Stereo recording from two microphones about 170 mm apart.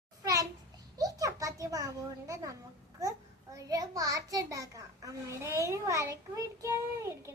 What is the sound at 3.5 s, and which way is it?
A child's voice, 20° right (ahead or behind).